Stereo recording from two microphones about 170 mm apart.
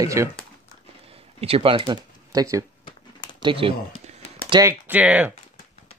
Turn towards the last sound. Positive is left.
turn(degrees=-10)  # may be behind; listen again after turning